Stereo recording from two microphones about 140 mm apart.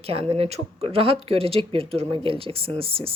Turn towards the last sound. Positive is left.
turn(degrees=-40)  # may be behind; listen again after turning